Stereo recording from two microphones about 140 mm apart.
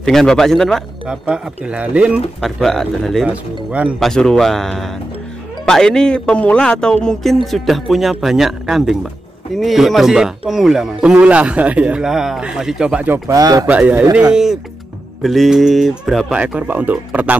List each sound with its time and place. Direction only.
0.0 s speech: 5° left (ahead or behind)
3.3 s speech: 10° right (ahead or behind)
4.0 s speech: 5° left (ahead or behind)
13.3 s speech: 25° right (ahead or behind)
13.7 s speech: 10° right (ahead or behind)